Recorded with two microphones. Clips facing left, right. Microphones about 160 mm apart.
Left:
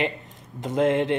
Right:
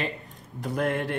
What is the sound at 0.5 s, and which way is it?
Speech, 20° left (ahead or behind).